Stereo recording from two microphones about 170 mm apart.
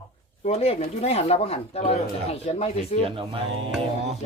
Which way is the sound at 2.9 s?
35° left (ahead or behind).